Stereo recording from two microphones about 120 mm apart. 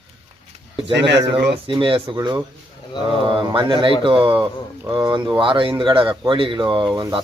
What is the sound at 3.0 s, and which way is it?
Speech, 45° right (ahead or behind).